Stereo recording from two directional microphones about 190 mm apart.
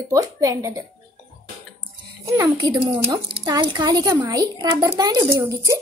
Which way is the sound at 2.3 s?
20° right (ahead or behind).